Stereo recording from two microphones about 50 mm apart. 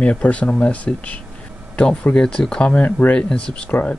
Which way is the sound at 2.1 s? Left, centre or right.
Centre.